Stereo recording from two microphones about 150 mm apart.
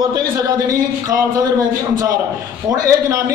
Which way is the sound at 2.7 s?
20° right (ahead or behind).